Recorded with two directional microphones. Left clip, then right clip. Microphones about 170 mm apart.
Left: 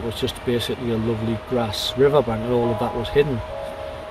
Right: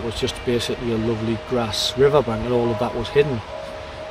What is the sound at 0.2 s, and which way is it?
Speech, 15° right (ahead or behind).